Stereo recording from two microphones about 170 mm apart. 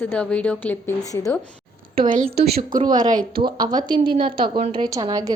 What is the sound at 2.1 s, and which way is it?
Speech, 70° right (ahead or behind).